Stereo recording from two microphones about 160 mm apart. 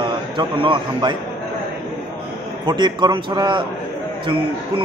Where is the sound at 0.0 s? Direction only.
30° right (ahead or behind).